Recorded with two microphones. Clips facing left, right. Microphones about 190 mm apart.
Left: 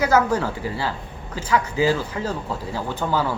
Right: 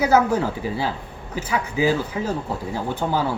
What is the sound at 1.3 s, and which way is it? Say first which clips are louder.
A man's voice: left 2 dB; 15° right (ahead or behind).